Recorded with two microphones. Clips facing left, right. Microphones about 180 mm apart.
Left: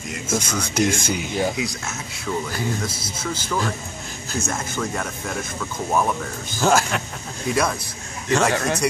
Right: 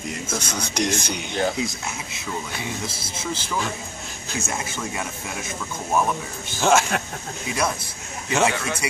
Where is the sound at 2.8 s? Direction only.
25° right (ahead or behind).